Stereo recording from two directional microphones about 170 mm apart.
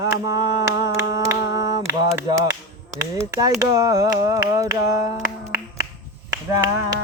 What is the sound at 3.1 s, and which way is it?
Speech, 20° right (ahead or behind).